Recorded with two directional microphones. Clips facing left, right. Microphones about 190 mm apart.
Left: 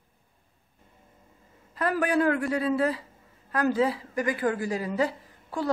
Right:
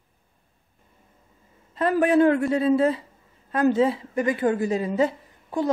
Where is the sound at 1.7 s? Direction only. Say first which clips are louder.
Right 6 dB; 25° right (ahead or behind).